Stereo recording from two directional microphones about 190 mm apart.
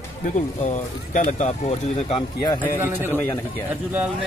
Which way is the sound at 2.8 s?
10° right (ahead or behind).